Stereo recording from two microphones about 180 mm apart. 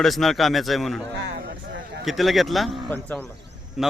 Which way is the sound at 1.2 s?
70° right (ahead or behind).